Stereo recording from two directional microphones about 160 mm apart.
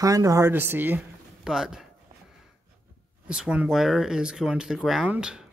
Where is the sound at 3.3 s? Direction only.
5° right (ahead or behind).